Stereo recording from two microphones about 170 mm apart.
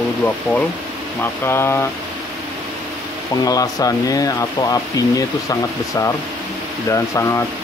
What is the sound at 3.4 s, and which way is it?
Speech, 20° left (ahead or behind).